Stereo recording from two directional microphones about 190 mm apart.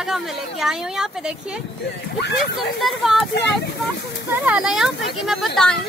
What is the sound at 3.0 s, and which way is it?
Speech, centre (ahead or behind).